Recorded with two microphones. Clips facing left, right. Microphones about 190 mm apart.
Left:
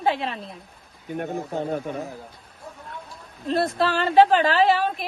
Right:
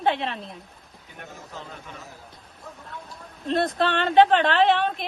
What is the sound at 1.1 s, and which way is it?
Speech, 55° left (ahead or behind).